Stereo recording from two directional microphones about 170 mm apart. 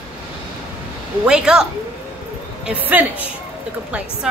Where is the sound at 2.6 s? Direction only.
10° right (ahead or behind).